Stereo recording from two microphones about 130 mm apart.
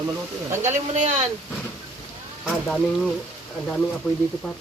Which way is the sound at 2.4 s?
5° left (ahead or behind).